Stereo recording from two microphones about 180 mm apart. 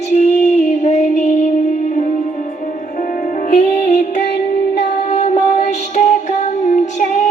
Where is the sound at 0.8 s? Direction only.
40° left (ahead or behind).